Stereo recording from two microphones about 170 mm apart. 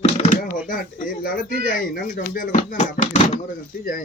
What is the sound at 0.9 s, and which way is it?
Speech, 55° left (ahead or behind).